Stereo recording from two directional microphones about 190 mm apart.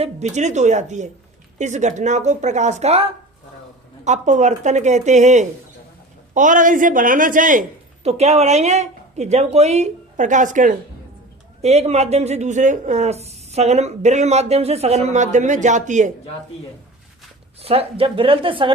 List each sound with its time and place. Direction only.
0.0 s a man's voice: 35° right (ahead or behind)
8.0 s speech: 35° right (ahead or behind)
17.6 s speech: 30° right (ahead or behind)